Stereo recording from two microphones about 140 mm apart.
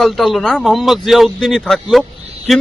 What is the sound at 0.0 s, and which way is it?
A man's voice, centre (ahead or behind).